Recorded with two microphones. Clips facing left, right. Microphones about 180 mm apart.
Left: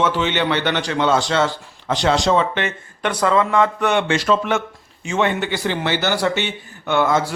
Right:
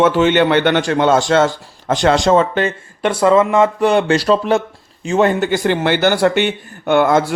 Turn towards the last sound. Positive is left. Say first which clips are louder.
# right 5 dB
turn(degrees=-55)  # may be behind; listen again after turning